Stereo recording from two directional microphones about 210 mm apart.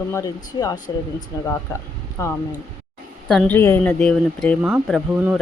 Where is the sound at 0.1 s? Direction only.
15° left (ahead or behind).